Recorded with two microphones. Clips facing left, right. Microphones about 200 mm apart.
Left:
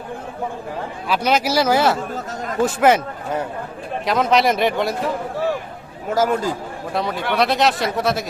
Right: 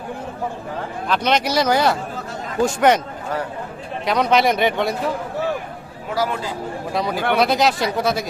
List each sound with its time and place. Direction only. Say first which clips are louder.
1.0 s speech: left 1 dB; 5° left (ahead or behind)
4.0 s speech: even; centre (ahead or behind)
6.1 s speech: left 4 dB; 45° left (ahead or behind)
6.9 s speech: right 1 dB; centre (ahead or behind)